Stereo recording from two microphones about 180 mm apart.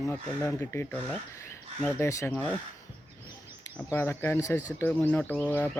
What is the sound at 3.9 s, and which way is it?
Speech, 10° left (ahead or behind).